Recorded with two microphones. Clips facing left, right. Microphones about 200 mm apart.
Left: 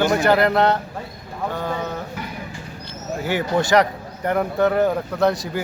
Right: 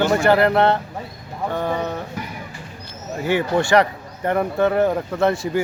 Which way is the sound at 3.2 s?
5° left (ahead or behind).